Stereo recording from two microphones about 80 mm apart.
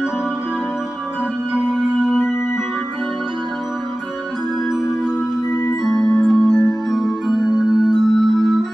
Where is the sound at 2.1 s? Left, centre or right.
Left.